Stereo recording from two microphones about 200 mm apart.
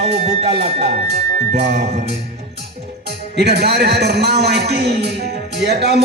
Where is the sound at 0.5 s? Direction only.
55° right (ahead or behind).